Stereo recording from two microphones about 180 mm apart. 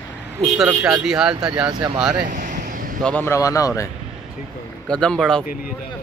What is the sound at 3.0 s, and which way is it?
Speech, 10° left (ahead or behind).